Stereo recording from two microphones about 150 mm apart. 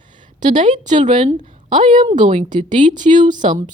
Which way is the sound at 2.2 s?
50° right (ahead or behind).